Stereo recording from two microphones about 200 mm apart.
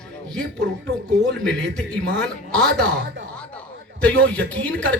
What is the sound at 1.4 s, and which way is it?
A man's voice, 5° left (ahead or behind).